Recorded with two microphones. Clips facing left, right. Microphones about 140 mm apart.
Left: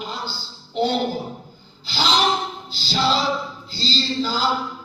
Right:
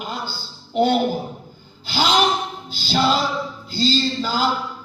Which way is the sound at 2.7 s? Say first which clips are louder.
Right 3 dB; 50° right (ahead or behind).